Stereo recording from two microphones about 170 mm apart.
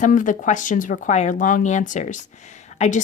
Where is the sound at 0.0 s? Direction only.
50° left (ahead or behind).